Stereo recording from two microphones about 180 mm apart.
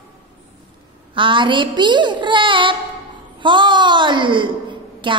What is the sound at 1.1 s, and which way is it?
Child singing, 25° right (ahead or behind).